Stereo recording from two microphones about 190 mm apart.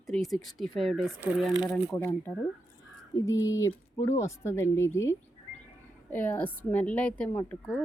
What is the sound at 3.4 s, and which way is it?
A woman's voice, 15° left (ahead or behind).